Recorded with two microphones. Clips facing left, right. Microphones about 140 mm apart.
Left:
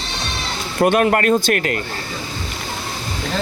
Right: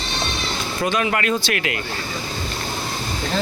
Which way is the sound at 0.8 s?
55° left (ahead or behind).